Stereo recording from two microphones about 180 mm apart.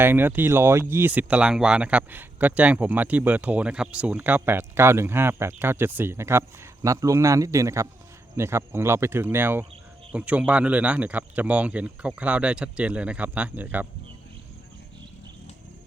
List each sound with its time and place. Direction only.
0.0 s speech: 10° right (ahead or behind)